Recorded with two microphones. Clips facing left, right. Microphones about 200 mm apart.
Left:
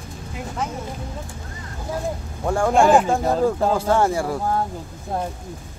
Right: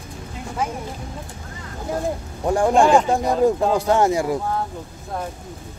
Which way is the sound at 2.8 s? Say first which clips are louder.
Left 1 dB; 5° left (ahead or behind).